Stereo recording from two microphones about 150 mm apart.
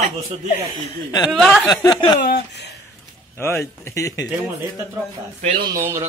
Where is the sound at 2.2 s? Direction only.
90° left.